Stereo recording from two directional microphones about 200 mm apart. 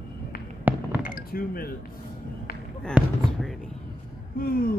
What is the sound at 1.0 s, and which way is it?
Chink, 45° left (ahead or behind).